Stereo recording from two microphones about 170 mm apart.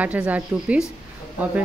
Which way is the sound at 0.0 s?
10° right (ahead or behind).